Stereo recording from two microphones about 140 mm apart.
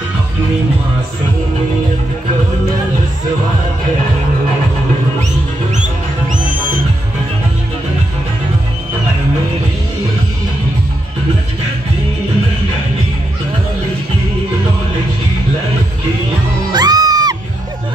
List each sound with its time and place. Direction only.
5.8 s music: 70° right (ahead or behind); by 6.8 s 85° right
16.7 s music: 30° right (ahead or behind)